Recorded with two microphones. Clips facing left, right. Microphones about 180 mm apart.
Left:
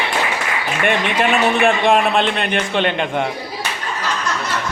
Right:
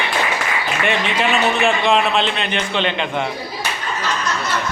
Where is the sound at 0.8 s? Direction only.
55° left (ahead or behind).